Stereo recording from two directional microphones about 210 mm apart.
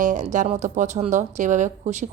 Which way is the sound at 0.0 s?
35° right (ahead or behind).